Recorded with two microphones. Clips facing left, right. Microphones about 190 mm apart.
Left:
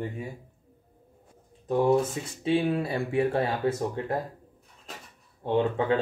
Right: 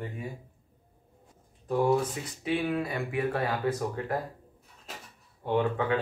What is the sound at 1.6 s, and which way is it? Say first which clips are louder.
Speech: left 3 dB; 20° left (ahead or behind).